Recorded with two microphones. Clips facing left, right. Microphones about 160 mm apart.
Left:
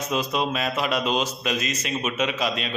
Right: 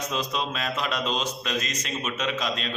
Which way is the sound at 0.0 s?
10° left (ahead or behind).